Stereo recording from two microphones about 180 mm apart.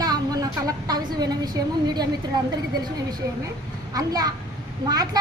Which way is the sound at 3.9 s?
20° right (ahead or behind).